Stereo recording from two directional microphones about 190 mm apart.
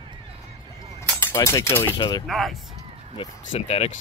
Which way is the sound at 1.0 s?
10° left (ahead or behind).